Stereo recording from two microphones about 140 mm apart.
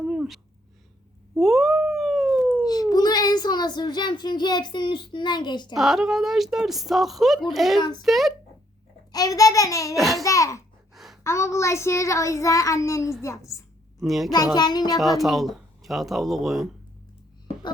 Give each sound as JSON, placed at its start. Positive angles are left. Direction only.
{"t": 0.1, "sound": "a sound", "side_deg": -5}
{"t": 1.4, "sound": "a sound", "side_deg": 0}
{"t": 2.9, "sound": "a child's voice", "side_deg": 30}
{"t": 5.7, "sound": "speech", "side_deg": 0}
{"t": 7.8, "sound": "a child's voice", "side_deg": 30}
{"t": 8.0, "sound": "speech", "side_deg": 0}
{"t": 9.1, "sound": "a child's voice", "side_deg": 25}
{"t": 9.9, "sound": "speech", "side_deg": 0}
{"t": 10.2, "sound": "a child's voice", "side_deg": 20}
{"t": 10.9, "sound": "a sound", "side_deg": 0}
{"t": 11.2, "sound": "a child's voice", "side_deg": 20}
{"t": 14.0, "sound": "speech", "side_deg": 0}
{"t": 14.3, "sound": "a child's voice", "side_deg": 25}
{"t": 14.9, "sound": "speech", "side_deg": 0}